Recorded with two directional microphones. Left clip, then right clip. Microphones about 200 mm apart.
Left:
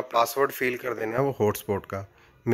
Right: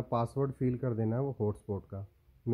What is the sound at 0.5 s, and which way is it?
Speech, centre (ahead or behind).